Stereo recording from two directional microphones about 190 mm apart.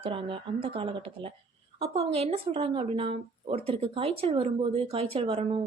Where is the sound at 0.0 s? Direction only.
30° right (ahead or behind).